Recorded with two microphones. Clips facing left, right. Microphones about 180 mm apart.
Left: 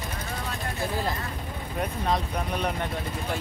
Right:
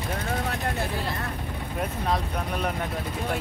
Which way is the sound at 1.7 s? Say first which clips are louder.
Even; centre (ahead or behind).